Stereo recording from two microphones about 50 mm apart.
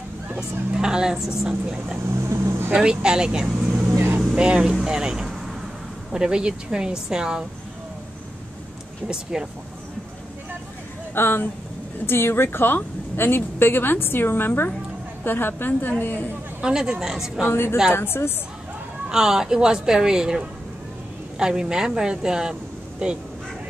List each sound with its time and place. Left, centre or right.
0.4 s a woman's voice: centre
2.1 s speech: right
2.7 s a woman's voice: centre
3.7 s vehicle: right
4.4 s a woman's voice: centre
4.8 s vehicle: centre
6.1 s a woman's voice: centre
9.0 s a woman's voice: centre
11.1 s a woman's voice: left
16.6 s a woman's voice: centre
17.5 s a woman's voice: left
19.0 s a woman's voice: centre